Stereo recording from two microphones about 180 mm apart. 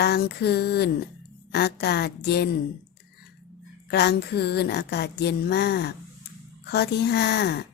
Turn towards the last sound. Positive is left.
turn(degrees=65)  # may be behind; listen again after turning